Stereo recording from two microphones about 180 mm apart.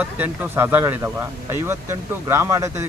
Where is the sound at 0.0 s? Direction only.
10° right (ahead or behind).